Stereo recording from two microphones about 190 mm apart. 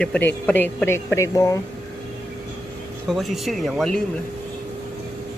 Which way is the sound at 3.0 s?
Centre (ahead or behind).